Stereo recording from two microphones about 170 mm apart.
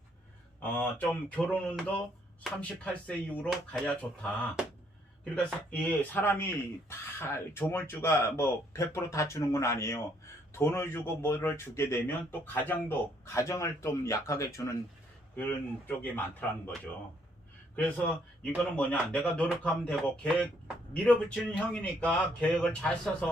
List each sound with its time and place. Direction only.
0.6 s speech: 10° left (ahead or behind)
17.7 s speech: 10° left (ahead or behind)